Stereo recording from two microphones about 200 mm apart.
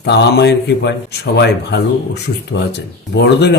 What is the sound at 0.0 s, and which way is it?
Speech, 55° left (ahead or behind).